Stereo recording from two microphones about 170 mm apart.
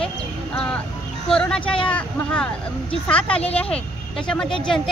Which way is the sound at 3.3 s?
35° left (ahead or behind).